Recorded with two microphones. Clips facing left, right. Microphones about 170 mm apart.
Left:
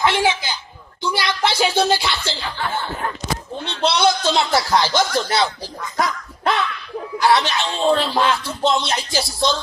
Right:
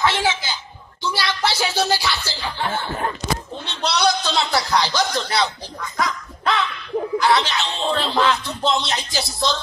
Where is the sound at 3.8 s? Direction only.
25° left (ahead or behind).